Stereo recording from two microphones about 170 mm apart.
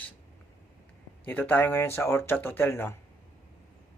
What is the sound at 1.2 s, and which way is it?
Speech, 10° left (ahead or behind).